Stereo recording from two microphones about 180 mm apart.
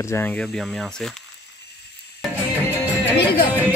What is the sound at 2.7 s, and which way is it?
Music, 10° right (ahead or behind).